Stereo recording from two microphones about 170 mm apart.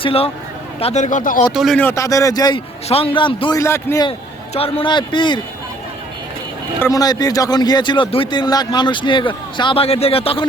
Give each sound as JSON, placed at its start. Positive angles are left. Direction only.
{"t": 0.0, "sound": "a man's voice", "side_deg": 35}
{"t": 1.5, "sound": "speech", "side_deg": 0}
{"t": 1.8, "sound": "a man's voice", "side_deg": 15}
{"t": 3.6, "sound": "a man's voice", "side_deg": 15}
{"t": 4.5, "sound": "a man's voice", "side_deg": 30}
{"t": 6.8, "sound": "a man's voice", "side_deg": 20}